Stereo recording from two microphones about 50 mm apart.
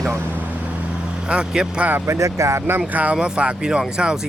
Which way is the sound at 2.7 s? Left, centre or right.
Right.